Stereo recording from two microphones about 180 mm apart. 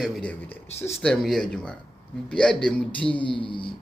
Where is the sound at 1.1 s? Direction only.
Centre (ahead or behind).